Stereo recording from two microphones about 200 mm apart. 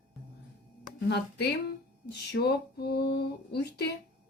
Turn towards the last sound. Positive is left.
turn(degrees=55)  # may be behind; listen again after turning